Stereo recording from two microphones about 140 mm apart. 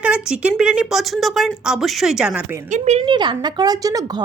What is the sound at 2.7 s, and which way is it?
Speech, 55° right (ahead or behind).